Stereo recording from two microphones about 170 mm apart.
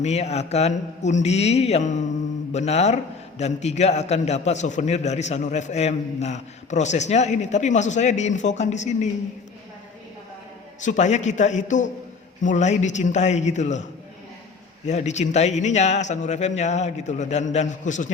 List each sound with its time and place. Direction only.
0.0 s a man's voice: 40° left (ahead or behind)
10.8 s a man's voice: 45° left (ahead or behind)
14.8 s a man's voice: 40° left (ahead or behind)